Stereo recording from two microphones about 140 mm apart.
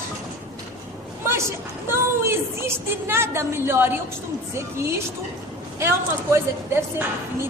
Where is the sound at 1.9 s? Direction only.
20° right (ahead or behind).